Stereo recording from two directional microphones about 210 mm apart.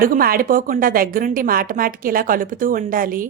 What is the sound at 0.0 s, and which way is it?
A woman's voice, 45° right (ahead or behind).